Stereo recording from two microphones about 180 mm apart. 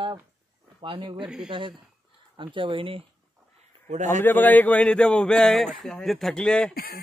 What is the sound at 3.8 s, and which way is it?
Speech, 40° right (ahead or behind).